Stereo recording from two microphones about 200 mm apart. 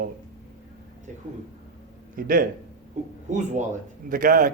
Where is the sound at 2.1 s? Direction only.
45° right (ahead or behind).